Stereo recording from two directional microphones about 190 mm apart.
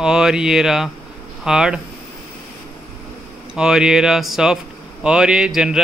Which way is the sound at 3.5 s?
5° right (ahead or behind).